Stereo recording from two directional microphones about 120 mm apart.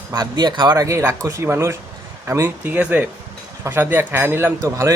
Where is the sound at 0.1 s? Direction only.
35° right (ahead or behind).